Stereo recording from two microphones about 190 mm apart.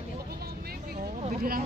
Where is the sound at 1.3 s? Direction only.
50° right (ahead or behind).